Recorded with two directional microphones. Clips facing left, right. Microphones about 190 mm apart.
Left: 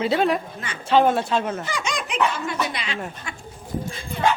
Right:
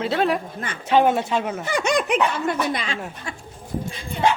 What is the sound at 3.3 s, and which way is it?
Speech, 35° right (ahead or behind).